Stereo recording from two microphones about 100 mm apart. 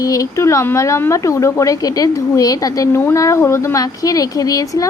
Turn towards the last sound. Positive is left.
turn(degrees=35)  # may be behind; listen again after turning